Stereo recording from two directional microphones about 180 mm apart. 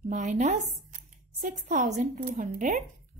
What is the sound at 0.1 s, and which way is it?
Speech, 45° right (ahead or behind).